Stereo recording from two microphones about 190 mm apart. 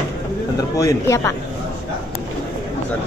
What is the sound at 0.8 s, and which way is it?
Speech, 15° left (ahead or behind).